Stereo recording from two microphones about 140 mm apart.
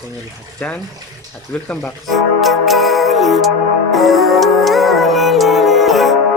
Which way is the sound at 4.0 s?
Centre (ahead or behind).